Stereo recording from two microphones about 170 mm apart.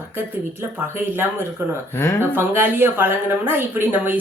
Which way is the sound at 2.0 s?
15° left (ahead or behind).